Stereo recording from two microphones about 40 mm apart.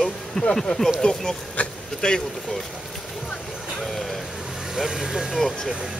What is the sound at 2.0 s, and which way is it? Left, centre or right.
Speech, centre.